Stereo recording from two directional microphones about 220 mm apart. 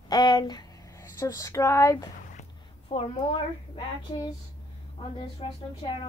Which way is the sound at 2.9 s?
25° left (ahead or behind).